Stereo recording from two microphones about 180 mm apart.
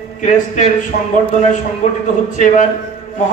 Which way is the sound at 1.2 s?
40° left (ahead or behind).